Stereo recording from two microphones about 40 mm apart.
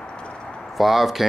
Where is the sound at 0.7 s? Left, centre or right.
Centre.